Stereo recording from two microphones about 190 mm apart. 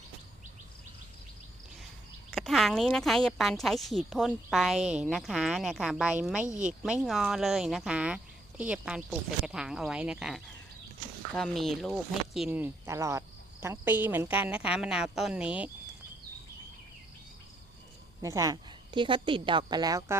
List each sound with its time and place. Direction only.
2.3 s speech: centre (ahead or behind)
18.2 s a woman's voice: 15° right (ahead or behind)